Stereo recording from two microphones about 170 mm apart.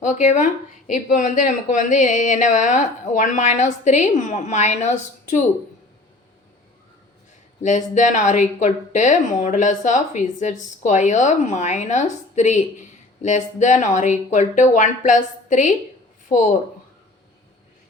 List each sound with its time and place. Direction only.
0.0 s speech: 45° left (ahead or behind)
7.6 s speech: 45° left (ahead or behind)